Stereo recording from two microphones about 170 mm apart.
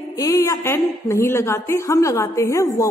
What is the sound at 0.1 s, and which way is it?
A woman's voice, 20° left (ahead or behind).